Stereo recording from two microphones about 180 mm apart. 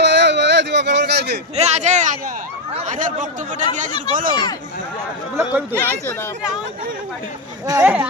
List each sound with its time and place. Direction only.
0.0 s a sound: 75° right (ahead or behind)
1.5 s a sound: 40° right (ahead or behind)
2.7 s speech: 45° right (ahead or behind)
5.4 s speech: 10° right (ahead or behind)
5.7 s speech: 10° left (ahead or behind)
7.7 s speech: 10° right (ahead or behind)